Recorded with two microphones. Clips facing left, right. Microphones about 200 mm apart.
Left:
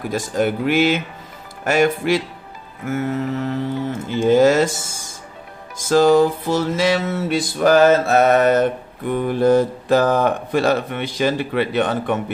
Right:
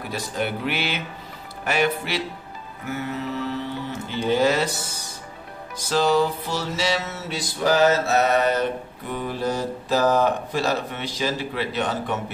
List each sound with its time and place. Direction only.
0.1 s music: 45° left (ahead or behind)
9.1 s speech: 55° left (ahead or behind)